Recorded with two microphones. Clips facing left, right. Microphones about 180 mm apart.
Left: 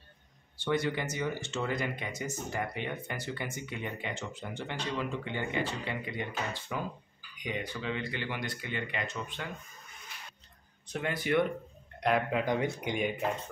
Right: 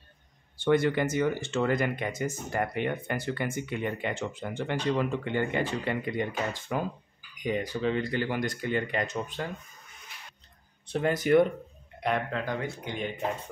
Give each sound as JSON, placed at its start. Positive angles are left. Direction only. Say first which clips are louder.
{"t": 0.6, "sound": "speech", "louder": "right 7 dB", "side_deg": -55}
{"t": 10.9, "sound": "speech", "louder": "right 7 dB", "side_deg": -40}
{"t": 12.3, "sound": "speech", "louder": "left 2 dB", "side_deg": 15}